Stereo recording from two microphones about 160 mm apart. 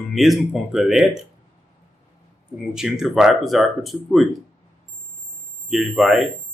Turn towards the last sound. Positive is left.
turn(degrees=0)  # may be behind; listen again after turning